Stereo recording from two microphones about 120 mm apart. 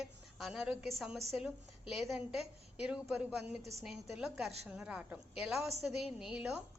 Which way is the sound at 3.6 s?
25° right (ahead or behind).